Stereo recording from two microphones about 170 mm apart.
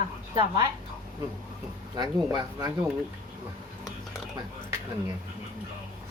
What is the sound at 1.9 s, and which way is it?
Speech, 25° right (ahead or behind).